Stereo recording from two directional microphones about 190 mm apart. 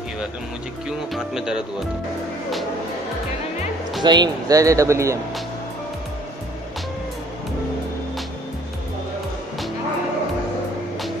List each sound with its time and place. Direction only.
0.8 s speech: 5° right (ahead or behind)
4.0 s speech: 25° right (ahead or behind)